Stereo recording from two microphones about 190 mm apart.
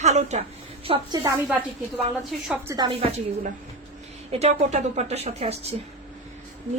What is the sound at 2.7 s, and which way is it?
Speech, 15° right (ahead or behind).